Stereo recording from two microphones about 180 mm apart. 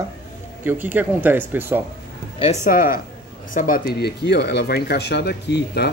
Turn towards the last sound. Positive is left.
turn(degrees=70)  # may be behind; listen again after turning